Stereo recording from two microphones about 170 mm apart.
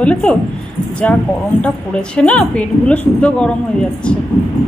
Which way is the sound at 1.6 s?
5° left (ahead or behind).